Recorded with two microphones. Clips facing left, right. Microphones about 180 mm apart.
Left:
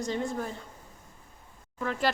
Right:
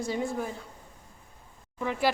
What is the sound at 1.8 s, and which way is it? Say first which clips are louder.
Speech: right 1 dB; 15° right (ahead or behind).